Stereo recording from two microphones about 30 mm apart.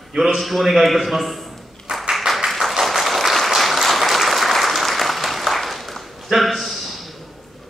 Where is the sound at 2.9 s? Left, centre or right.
Centre.